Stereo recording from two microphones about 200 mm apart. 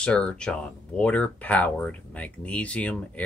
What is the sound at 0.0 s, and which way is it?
Speech, 5° left (ahead or behind).